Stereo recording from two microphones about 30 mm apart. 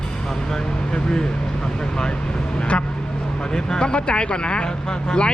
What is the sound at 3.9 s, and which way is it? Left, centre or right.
Speech, left.